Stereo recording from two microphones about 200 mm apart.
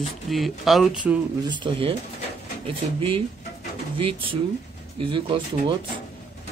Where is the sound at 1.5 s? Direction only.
25° right (ahead or behind).